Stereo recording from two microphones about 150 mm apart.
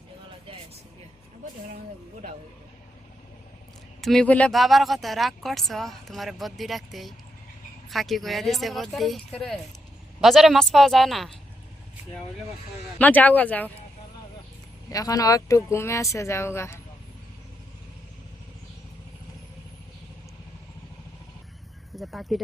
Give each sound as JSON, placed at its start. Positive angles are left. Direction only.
{"t": 4.0, "sound": "speech", "side_deg": 5}
{"t": 13.0, "sound": "a man's voice", "side_deg": 10}
{"t": 14.8, "sound": "speech", "side_deg": 25}
{"t": 21.9, "sound": "speech", "side_deg": 0}